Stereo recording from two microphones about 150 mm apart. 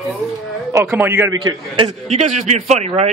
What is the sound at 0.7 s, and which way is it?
Speech, 15° right (ahead or behind).